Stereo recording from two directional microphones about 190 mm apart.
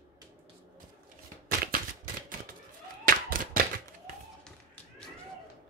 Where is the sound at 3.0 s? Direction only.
45° right (ahead or behind).